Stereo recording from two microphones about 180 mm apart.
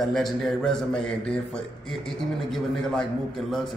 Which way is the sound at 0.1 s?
Centre (ahead or behind).